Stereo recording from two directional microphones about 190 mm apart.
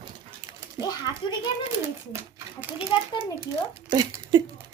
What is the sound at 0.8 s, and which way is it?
Speech, 15° right (ahead or behind).